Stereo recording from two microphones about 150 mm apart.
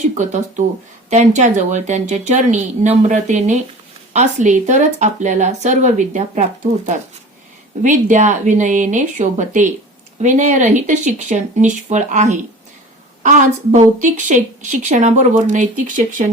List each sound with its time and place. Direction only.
0.0 s a woman's voice: 50° right (ahead or behind)
7.8 s a woman's voice: 55° right (ahead or behind)